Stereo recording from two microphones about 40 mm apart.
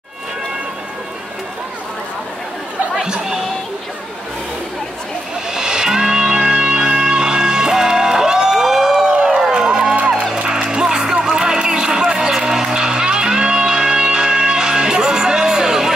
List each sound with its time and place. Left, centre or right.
3.1 s music: centre
5.5 s music: centre
9.5 s music: centre